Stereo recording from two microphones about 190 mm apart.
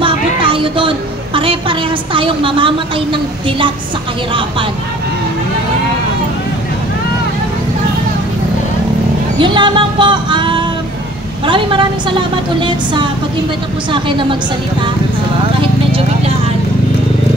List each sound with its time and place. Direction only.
0.0 s a sound: 25° right (ahead or behind)
4.3 s a woman's voice: 25° right (ahead or behind)
9.4 s a woman's voice: 25° right (ahead or behind)
15.4 s clip-clop: 30° right (ahead or behind)